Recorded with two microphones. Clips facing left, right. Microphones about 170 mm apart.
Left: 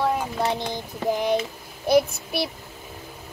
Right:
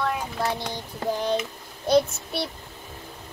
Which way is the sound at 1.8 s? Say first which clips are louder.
Left 1 dB; 10° left (ahead or behind).